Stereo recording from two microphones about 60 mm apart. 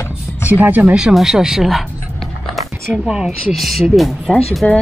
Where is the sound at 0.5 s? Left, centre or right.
Right.